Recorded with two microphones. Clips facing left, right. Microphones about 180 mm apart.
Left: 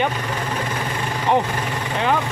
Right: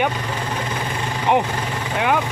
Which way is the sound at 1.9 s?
10° right (ahead or behind).